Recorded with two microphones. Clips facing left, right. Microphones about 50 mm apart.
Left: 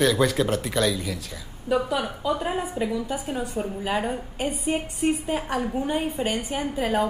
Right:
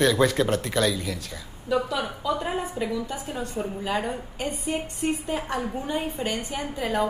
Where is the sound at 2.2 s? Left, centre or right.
Centre.